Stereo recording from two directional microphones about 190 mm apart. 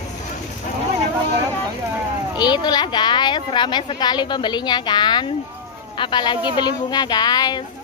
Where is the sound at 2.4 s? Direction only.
20° left (ahead or behind).